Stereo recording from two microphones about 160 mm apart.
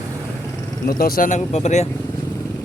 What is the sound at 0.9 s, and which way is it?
Speech, 65° left (ahead or behind).